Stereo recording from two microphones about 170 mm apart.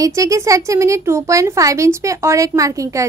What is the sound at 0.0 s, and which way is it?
A woman's voice, 20° right (ahead or behind).